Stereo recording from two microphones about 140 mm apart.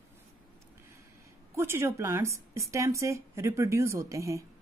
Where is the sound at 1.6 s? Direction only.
20° right (ahead or behind).